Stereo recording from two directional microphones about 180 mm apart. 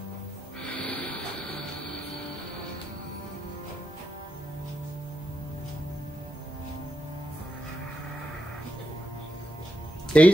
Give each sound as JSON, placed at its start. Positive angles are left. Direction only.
{"t": 0.7, "sound": "vehicle", "side_deg": 10}
{"t": 10.1, "sound": "speech", "side_deg": 5}